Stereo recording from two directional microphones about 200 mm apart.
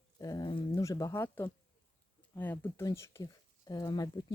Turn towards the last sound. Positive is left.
turn(degrees=20)  # may be behind; listen again after turning